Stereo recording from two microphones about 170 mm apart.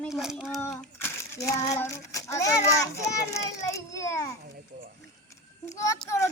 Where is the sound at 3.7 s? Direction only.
20° left (ahead or behind).